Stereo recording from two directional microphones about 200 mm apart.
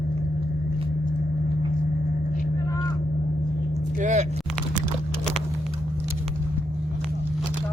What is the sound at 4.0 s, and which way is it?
Speech, 35° right (ahead or behind).